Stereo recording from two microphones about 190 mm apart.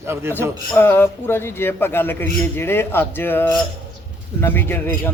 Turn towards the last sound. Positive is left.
turn(degrees=10)  # may be behind; listen again after turning